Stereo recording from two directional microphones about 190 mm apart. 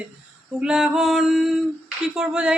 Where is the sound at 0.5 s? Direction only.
5° right (ahead or behind).